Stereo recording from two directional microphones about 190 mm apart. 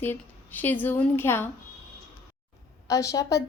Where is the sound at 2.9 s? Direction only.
15° left (ahead or behind).